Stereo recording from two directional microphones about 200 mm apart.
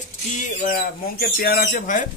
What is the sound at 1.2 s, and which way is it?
Speech, 50° left (ahead or behind).